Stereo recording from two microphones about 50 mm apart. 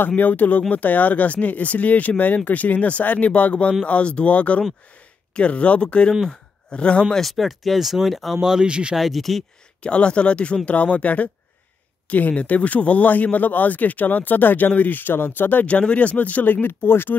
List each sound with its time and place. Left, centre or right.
0.1 s speech: left
7.2 s speech: centre
8.4 s speech: centre
8.9 s speech: centre
9.8 s speech: left
15.6 s speech: left
16.6 s speech: left